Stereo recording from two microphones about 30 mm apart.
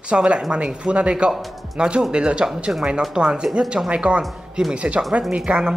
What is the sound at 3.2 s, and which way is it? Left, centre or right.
Speech, right.